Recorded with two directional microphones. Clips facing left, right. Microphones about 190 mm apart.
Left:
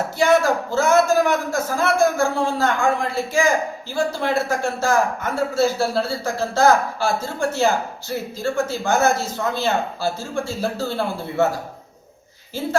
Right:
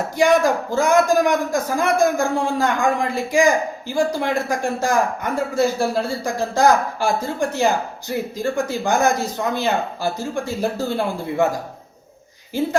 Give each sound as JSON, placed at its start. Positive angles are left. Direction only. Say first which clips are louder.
{"t": 0.2, "sound": "a man's voice", "louder": "right 1 dB", "side_deg": -15}
{"t": 12.6, "sound": "a man's voice", "louder": "right 5 dB", "side_deg": -15}